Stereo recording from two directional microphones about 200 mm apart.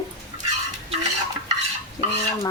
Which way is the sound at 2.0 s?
25° left (ahead or behind).